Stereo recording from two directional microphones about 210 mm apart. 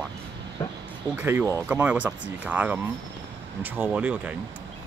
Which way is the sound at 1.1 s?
10° right (ahead or behind).